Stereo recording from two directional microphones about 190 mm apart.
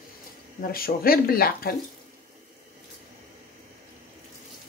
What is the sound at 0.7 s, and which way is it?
Speech, 50° left (ahead or behind).